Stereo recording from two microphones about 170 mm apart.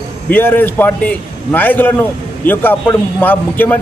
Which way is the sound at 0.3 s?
10° left (ahead or behind).